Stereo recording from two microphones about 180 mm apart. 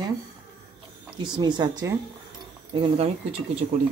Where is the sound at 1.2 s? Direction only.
25° right (ahead or behind).